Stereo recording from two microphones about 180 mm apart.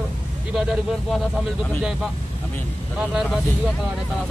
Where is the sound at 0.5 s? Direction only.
Centre (ahead or behind).